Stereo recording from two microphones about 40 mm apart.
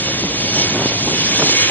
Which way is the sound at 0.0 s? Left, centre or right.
Left.